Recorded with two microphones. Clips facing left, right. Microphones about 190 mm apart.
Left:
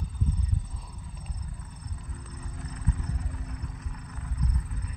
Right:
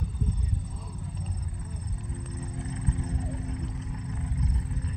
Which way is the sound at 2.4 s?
25° right (ahead or behind).